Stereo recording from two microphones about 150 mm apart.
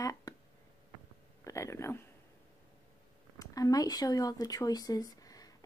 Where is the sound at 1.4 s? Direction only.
20° left (ahead or behind).